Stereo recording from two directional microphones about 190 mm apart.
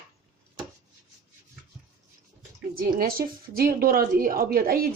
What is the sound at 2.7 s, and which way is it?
A woman's voice, 50° right (ahead or behind).